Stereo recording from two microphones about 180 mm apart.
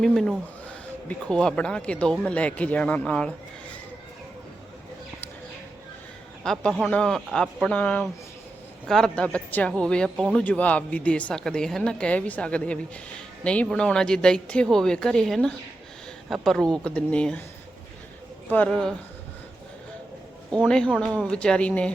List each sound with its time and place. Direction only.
0.0 s a woman's voice: centre (ahead or behind)
6.4 s a woman's voice: 5° left (ahead or behind)
18.4 s a woman's voice: 10° left (ahead or behind)
20.5 s a woman's voice: 5° left (ahead or behind)